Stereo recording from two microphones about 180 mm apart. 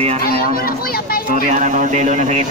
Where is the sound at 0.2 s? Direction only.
55° left (ahead or behind).